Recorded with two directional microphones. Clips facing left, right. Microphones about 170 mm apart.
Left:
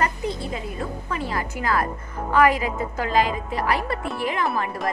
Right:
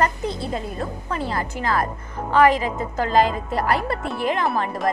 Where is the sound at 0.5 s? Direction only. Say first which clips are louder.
Right 2 dB; 40° right (ahead or behind).